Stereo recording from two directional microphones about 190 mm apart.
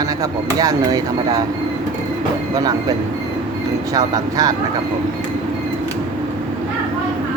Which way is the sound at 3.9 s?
20° right (ahead or behind).